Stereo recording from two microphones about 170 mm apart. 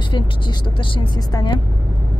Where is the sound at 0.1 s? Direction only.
30° left (ahead or behind).